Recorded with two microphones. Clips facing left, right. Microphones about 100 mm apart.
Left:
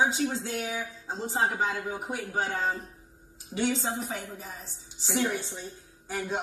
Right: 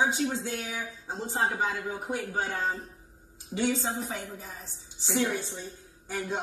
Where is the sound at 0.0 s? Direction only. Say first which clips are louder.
Left 1 dB; 20° left (ahead or behind).